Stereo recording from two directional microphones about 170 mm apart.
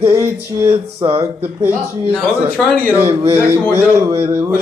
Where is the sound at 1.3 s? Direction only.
10° right (ahead or behind).